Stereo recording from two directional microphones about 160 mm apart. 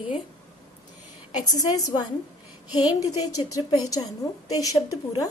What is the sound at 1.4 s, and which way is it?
A woman's voice, 25° left (ahead or behind).